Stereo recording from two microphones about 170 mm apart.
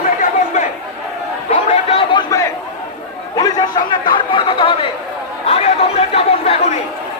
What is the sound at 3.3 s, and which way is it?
A man's voice, 25° left (ahead or behind).